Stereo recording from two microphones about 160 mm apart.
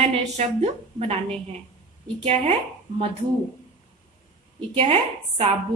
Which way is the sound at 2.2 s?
35° right (ahead or behind).